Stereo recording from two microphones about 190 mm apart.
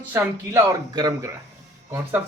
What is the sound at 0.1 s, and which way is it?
Speech, 15° right (ahead or behind).